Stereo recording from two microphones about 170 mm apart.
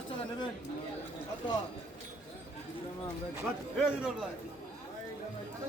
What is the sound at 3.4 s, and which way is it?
Speech, 5° right (ahead or behind).